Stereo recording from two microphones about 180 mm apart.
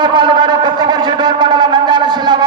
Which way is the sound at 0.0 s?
25° right (ahead or behind).